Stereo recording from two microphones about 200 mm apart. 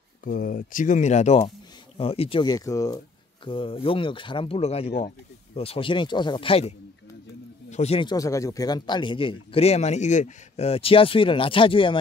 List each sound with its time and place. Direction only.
0.2 s a man's voice: 45° left (ahead or behind); by 6.7 s 25° left (ahead or behind)
7.7 s a man's voice: 30° left (ahead or behind)